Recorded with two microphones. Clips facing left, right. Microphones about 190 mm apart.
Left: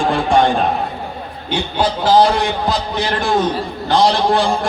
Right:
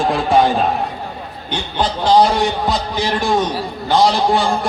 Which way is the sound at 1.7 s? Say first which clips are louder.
Even; 5° left (ahead or behind).